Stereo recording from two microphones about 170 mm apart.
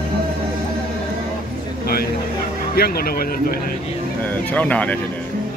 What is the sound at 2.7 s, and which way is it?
Speech, 65° left (ahead or behind).